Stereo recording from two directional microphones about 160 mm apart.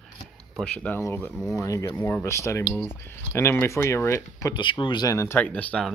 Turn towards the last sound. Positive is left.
turn(degrees=10)  # may be behind; listen again after turning